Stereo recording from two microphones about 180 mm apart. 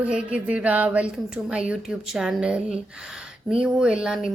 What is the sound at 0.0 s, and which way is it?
A woman's voice, 5° right (ahead or behind).